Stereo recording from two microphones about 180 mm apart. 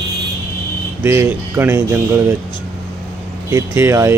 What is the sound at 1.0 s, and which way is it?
Speech, 15° right (ahead or behind).